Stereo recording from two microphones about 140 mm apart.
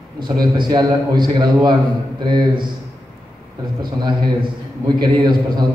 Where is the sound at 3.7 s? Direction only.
30° right (ahead or behind).